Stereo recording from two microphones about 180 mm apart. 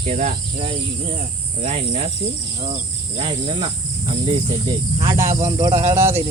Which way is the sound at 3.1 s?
35° right (ahead or behind).